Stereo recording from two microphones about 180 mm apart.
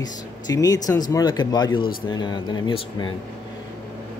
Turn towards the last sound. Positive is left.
turn(degrees=25)  # may be behind; listen again after turning